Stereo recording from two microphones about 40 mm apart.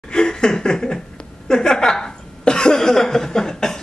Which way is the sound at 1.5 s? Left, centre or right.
Centre.